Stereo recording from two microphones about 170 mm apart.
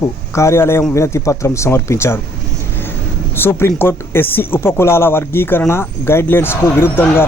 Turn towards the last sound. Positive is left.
turn(degrees=15)  # may be behind; listen again after turning